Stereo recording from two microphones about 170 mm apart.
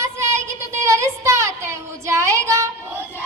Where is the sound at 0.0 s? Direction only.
15° right (ahead or behind).